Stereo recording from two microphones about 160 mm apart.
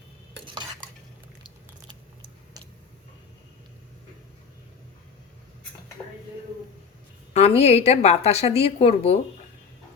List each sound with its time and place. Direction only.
0.4 s stir: 25° right (ahead or behind)
7.3 s a woman's voice: 40° left (ahead or behind)